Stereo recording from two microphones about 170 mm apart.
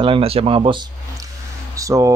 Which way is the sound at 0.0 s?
35° right (ahead or behind).